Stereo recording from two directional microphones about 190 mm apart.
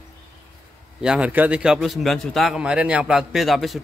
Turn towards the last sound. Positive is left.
turn(degrees=0)  # may be behind; listen again after turning